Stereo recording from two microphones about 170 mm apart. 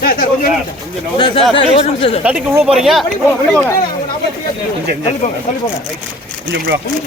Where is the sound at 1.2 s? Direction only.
30° left (ahead or behind).